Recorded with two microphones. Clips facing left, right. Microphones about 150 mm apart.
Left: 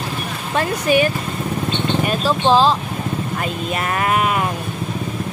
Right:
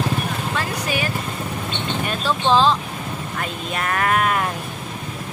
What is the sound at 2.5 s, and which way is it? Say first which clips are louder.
Speech: left 2 dB; 35° left (ahead or behind).